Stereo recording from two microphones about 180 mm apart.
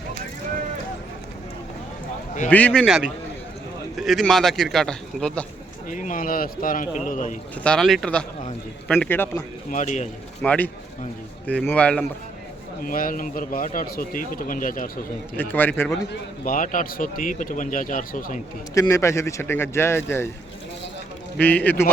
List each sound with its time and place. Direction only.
2.5 s a man's voice: 10° left (ahead or behind)
5.9 s a man's voice: 45° left (ahead or behind)
7.5 s a man's voice: 5° left (ahead or behind)
9.6 s a man's voice: 45° left (ahead or behind)
10.4 s speech: 10° left (ahead or behind)
12.8 s a man's voice: 50° left (ahead or behind)
15.4 s speech: 10° left (ahead or behind)
16.4 s a man's voice: 45° left (ahead or behind)
18.7 s speech: 15° left (ahead or behind)
21.3 s speech: 10° left (ahead or behind)